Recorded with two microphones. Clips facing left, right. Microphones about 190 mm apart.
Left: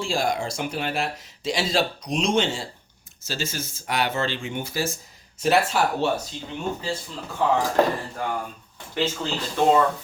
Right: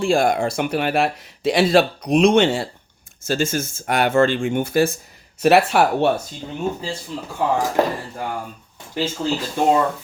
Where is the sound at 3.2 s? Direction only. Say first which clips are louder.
Right 9 dB; 50° right (ahead or behind).